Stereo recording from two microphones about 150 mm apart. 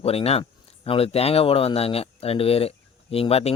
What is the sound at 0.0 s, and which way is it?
Speech, 40° left (ahead or behind).